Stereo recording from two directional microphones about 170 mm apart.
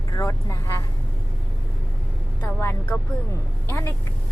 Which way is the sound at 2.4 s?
10° left (ahead or behind).